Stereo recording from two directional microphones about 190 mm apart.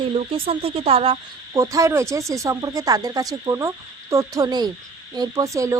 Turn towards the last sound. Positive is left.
turn(degrees=-15)  # may be behind; listen again after turning